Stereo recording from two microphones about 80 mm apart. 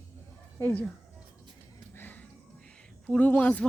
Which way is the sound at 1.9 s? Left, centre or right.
Left.